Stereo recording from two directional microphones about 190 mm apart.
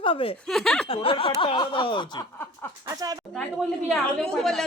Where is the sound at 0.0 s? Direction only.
30° left (ahead or behind).